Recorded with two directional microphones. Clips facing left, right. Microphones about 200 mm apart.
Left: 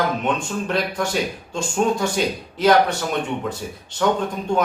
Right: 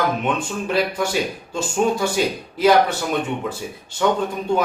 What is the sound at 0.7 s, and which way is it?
Speech, 5° right (ahead or behind).